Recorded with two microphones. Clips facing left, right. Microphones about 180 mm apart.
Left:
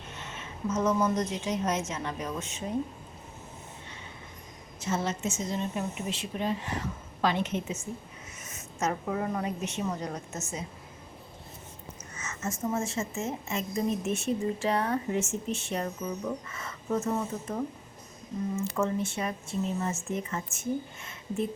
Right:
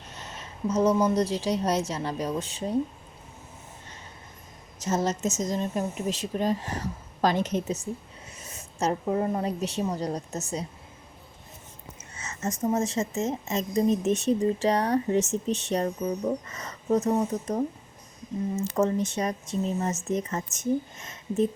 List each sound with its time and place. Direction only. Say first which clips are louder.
0.1 s a sound: right 1 dB; 40° right (ahead or behind)
1.0 s a woman's voice: right 4 dB; 35° right (ahead or behind)
4.8 s a woman's voice: right 4 dB; 40° right (ahead or behind)
12.1 s a woman's voice: right 4 dB; 35° right (ahead or behind)
18.8 s a woman's voice: right 6 dB; 40° right (ahead or behind)